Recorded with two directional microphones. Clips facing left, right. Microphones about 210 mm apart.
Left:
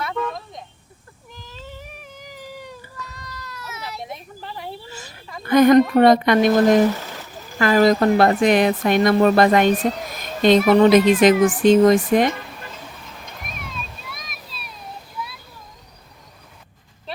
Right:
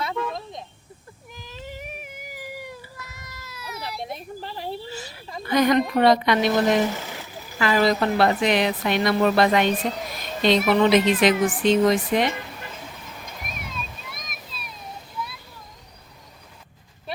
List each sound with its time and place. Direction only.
1.3 s cat: 15° right (ahead or behind)
4.4 s a sound: 30° right (ahead or behind)
5.5 s a woman's voice: 50° left (ahead or behind)